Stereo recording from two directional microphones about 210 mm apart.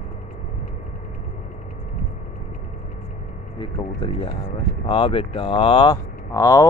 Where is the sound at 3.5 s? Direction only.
25° left (ahead or behind).